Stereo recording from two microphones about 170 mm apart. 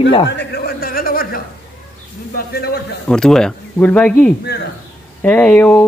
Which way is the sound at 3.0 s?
5° left (ahead or behind).